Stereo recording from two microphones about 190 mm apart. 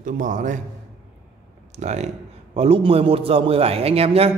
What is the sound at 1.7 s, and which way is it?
A man's voice, 35° right (ahead or behind).